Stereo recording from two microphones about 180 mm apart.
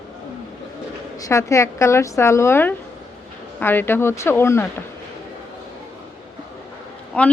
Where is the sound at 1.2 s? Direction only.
15° left (ahead or behind).